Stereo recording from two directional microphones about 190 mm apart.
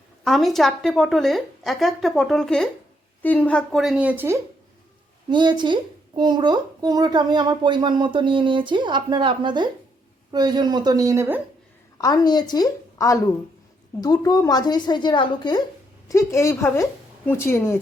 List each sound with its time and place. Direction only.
0.3 s a woman's voice: centre (ahead or behind)
5.3 s a woman's voice: 25° right (ahead or behind)
11.9 s a woman's voice: 20° left (ahead or behind)